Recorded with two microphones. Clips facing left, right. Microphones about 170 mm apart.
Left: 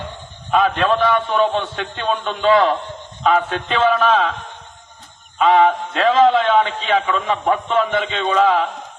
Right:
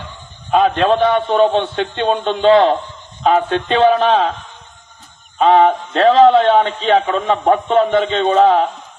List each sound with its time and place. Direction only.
0.5 s a man's voice: 35° right (ahead or behind)
5.4 s a man's voice: 35° right (ahead or behind)